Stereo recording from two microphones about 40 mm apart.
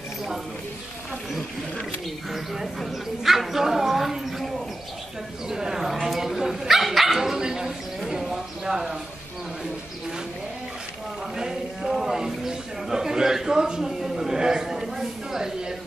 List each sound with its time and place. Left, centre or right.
2.3 s speech: centre
5.5 s speech: centre
6.0 s bow-wow: centre
7.2 s dog: centre
8.0 s a sound: centre
11.3 s a sound: centre